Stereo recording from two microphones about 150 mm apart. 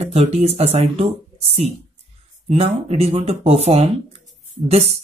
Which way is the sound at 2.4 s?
45° right (ahead or behind).